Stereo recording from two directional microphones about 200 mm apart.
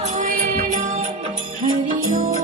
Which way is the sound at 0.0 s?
40° right (ahead or behind).